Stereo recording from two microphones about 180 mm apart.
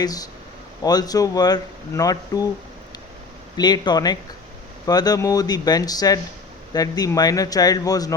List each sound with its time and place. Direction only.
0.0 s speech: 20° left (ahead or behind)
3.6 s speech: 25° left (ahead or behind)